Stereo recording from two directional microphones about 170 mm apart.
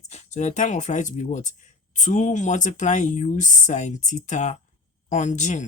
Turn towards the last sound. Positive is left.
turn(degrees=45)  # may be behind; listen again after turning